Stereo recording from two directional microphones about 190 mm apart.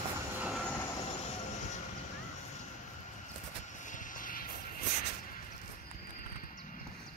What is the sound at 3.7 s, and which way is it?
Vehicle, 40° left (ahead or behind).